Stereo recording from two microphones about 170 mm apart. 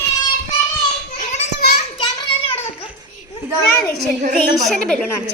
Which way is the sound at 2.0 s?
30° left (ahead or behind).